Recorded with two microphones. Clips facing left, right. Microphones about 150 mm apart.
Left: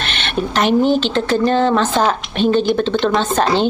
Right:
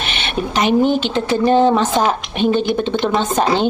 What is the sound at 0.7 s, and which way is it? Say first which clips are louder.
Speech: even; 50° right (ahead or behind).